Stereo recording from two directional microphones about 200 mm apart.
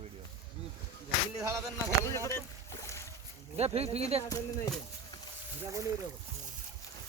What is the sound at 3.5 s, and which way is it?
Speech, 30° right (ahead or behind).